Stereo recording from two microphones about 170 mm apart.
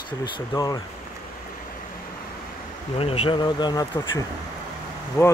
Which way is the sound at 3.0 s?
35° left (ahead or behind).